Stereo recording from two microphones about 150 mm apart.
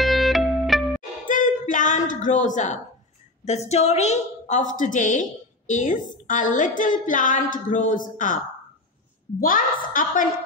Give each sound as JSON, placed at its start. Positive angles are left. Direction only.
{"t": 0.0, "sound": "music", "side_deg": 0}
{"t": 1.2, "sound": "music", "side_deg": 60}
{"t": 3.4, "sound": "a woman's voice", "side_deg": 45}
{"t": 9.4, "sound": "a woman's voice", "side_deg": 65}